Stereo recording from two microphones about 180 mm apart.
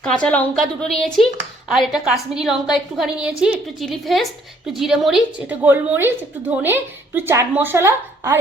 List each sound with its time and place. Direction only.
0.0 s a woman's voice: 5° left (ahead or behind); by 8.4 s 15° right (ahead or behind)